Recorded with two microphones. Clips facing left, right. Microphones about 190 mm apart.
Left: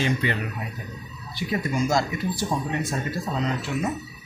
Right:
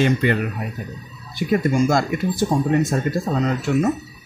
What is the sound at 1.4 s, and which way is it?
Speech, 55° right (ahead or behind).